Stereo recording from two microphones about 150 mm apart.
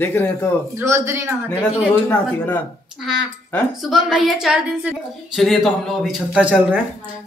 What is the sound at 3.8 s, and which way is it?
A man's voice, centre (ahead or behind).